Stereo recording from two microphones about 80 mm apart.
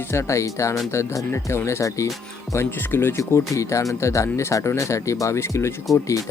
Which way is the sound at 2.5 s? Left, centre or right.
Left.